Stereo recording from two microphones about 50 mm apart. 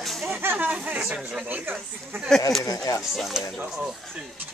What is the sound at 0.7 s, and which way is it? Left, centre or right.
Speech, right.